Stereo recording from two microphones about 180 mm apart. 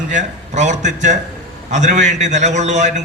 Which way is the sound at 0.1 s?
40° right (ahead or behind).